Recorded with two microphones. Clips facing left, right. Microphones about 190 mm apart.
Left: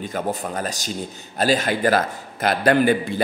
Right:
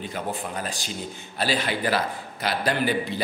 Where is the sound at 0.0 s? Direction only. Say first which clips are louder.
Left 5 dB; 45° left (ahead or behind).